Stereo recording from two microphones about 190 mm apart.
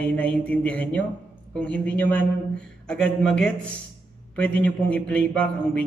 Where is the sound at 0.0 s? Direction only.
5° left (ahead or behind).